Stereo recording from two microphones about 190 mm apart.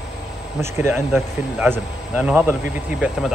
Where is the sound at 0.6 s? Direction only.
10° right (ahead or behind).